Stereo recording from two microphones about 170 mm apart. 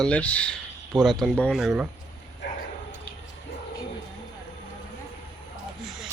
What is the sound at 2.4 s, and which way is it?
Dog, 90° left.